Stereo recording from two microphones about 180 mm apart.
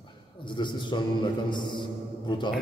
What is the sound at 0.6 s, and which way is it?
Music, 25° left (ahead or behind).